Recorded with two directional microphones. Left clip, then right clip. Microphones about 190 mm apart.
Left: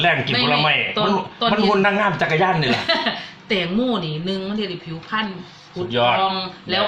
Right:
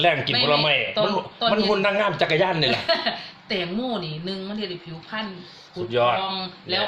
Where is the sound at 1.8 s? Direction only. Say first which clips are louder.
Left 3 dB; 40° right (ahead or behind).